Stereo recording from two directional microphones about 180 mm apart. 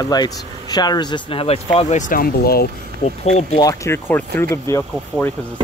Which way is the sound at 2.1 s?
55° left (ahead or behind).